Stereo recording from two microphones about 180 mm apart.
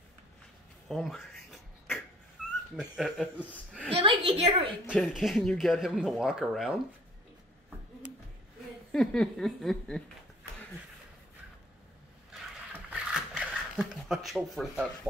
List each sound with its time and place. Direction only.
0.8 s a sound: centre (ahead or behind)
2.4 s dog: 5° right (ahead or behind)
2.7 s speech: centre (ahead or behind)
3.9 s a woman's voice: 30° right (ahead or behind)
4.8 s speech: 5° left (ahead or behind)
8.9 s speech: 5° left (ahead or behind)
12.9 s a sound: 5° right (ahead or behind)